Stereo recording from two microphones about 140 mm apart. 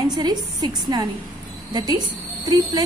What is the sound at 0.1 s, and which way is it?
A woman's voice, 30° right (ahead or behind).